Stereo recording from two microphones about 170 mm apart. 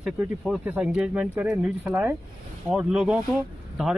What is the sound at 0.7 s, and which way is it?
Speech, 5° right (ahead or behind).